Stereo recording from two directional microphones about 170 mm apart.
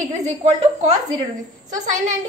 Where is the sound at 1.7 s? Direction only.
45° right (ahead or behind).